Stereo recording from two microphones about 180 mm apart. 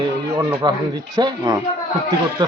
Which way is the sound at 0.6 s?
25° right (ahead or behind).